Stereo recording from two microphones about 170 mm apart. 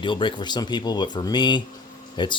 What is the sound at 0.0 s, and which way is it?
Speech, 30° left (ahead or behind).